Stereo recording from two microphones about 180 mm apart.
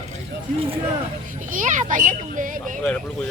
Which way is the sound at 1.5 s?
45° right (ahead or behind).